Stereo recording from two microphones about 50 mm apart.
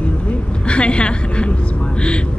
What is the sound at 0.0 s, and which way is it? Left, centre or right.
A woman's voice, left.